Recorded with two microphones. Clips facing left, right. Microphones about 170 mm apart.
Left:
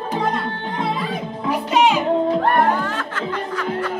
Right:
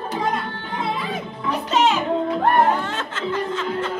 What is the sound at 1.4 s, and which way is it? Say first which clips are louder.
Music: left 2 dB; 10° left (ahead or behind).